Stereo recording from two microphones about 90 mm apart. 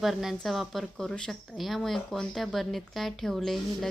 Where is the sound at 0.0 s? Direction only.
5° right (ahead or behind).